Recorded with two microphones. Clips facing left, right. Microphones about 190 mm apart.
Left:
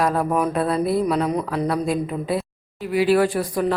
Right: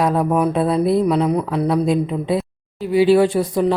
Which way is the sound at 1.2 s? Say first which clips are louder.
Right 4 dB; 10° right (ahead or behind).